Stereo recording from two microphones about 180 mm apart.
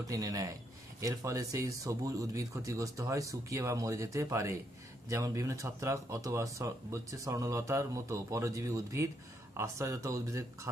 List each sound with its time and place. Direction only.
0.1 s speech: 20° right (ahead or behind)